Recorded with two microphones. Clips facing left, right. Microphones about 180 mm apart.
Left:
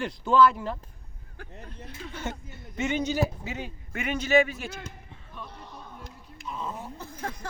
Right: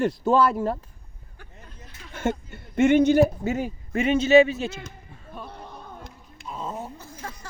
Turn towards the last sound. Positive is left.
turn(degrees=55)  # may be behind; listen again after turning